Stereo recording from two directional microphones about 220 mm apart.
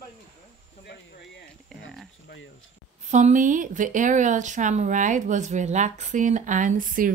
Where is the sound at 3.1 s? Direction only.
35° right (ahead or behind).